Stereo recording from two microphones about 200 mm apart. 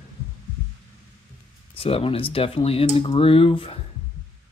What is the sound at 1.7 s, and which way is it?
Speech, 30° left (ahead or behind).